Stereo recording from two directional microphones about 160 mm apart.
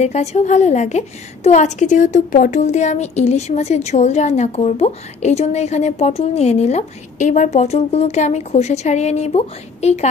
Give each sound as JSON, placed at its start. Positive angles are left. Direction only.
{"t": 0.0, "sound": "a woman's voice", "side_deg": 45}